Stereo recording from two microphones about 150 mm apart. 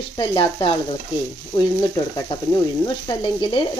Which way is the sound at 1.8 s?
25° left (ahead or behind).